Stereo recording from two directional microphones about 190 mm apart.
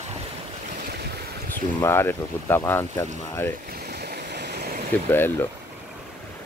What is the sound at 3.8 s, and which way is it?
Stream, 55° right (ahead or behind).